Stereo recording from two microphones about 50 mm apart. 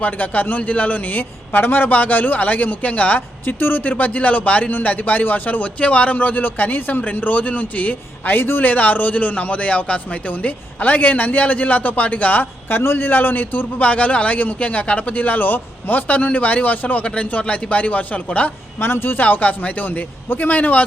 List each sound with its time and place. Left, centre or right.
0.0 s a man's voice: left
3.4 s a man's voice: left
13.1 s a man's voice: left
18.8 s speech: left
19.2 s a man's voice: left